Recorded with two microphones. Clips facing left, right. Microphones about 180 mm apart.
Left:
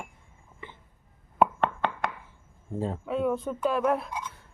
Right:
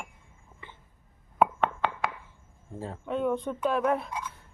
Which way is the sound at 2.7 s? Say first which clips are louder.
Left 7 dB; 20° left (ahead or behind).